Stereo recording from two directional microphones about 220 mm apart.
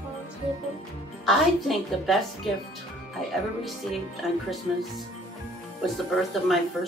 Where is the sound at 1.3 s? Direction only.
Centre (ahead or behind).